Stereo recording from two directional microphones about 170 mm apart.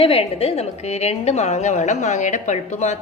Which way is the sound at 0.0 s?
35° left (ahead or behind).